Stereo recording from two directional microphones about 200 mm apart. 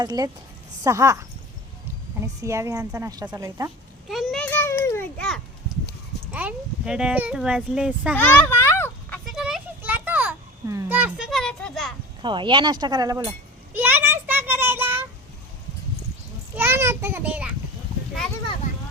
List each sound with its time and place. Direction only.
0.0 s a woman's voice: 20° right (ahead or behind)
2.2 s a woman's voice: 15° right (ahead or behind)
4.1 s a child's voice: centre (ahead or behind)
8.1 s children playing: 10° left (ahead or behind)
9.3 s a sound: 5° right (ahead or behind)
12.2 s speech: 25° right (ahead or behind)
13.7 s child singing: 10° right (ahead or behind)
16.6 s child singing: 10° right (ahead or behind)